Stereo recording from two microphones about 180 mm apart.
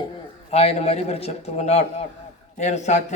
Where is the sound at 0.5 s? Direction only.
35° left (ahead or behind).